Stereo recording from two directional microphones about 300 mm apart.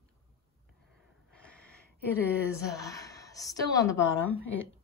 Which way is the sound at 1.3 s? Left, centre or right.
Centre.